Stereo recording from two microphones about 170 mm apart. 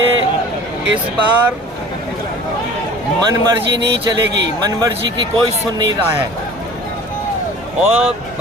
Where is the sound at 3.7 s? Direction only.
85° right.